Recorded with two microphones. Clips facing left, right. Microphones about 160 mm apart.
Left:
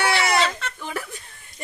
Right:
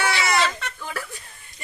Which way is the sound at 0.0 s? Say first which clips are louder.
Left 2 dB; 60° left (ahead or behind).